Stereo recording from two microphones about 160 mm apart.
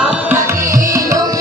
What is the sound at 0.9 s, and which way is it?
Music, 20° right (ahead or behind).